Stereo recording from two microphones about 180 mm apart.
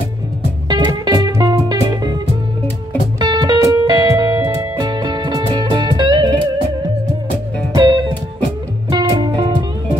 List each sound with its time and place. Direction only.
0.7 s music: 25° right (ahead or behind)
3.2 s music: 25° right (ahead or behind)
7.7 s music: 20° right (ahead or behind)